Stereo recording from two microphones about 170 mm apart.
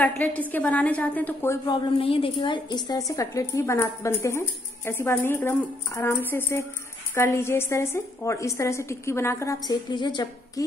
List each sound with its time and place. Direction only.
0.0 s a woman's voice: 10° left (ahead or behind)
1.9 s a woman's voice: 35° left (ahead or behind)